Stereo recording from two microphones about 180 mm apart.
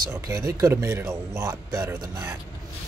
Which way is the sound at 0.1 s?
15° right (ahead or behind).